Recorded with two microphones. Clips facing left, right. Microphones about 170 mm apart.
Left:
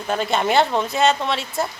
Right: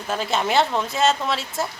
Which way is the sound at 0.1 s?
Centre (ahead or behind).